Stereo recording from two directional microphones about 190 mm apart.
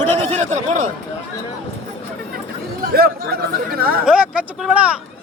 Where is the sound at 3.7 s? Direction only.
50° right (ahead or behind).